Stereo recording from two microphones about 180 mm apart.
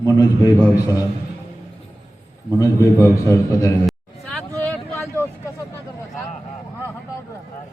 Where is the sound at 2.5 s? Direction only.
15° left (ahead or behind).